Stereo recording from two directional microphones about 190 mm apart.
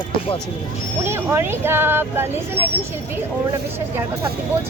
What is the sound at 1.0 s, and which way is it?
A woman's voice, 10° right (ahead or behind).